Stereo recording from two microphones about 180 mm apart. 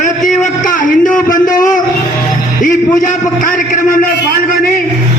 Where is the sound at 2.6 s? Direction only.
50° left (ahead or behind).